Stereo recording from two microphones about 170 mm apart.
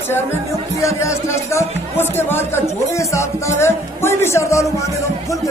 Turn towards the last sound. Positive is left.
turn(degrees=15)  # may be behind; listen again after turning